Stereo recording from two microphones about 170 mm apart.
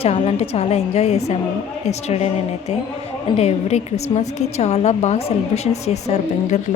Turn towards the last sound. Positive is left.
turn(degrees=45)  # may be behind; listen again after turning